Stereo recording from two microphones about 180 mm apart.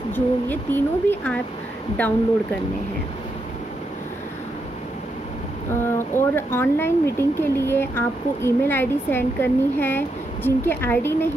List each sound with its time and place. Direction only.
0.1 s speech: 10° left (ahead or behind)
5.7 s speech: 15° left (ahead or behind)